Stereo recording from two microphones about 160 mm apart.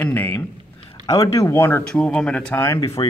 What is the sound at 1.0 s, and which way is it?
Speech, 20° left (ahead or behind).